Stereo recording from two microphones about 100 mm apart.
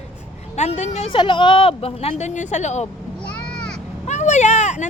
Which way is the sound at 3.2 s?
10° left (ahead or behind).